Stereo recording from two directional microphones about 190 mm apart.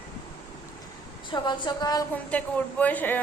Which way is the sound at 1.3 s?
25° left (ahead or behind).